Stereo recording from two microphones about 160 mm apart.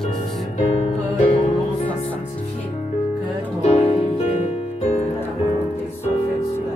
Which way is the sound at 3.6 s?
40° left (ahead or behind).